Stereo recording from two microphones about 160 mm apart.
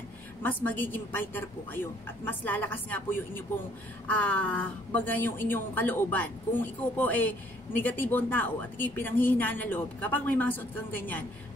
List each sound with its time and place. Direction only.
0.4 s speech: 10° left (ahead or behind)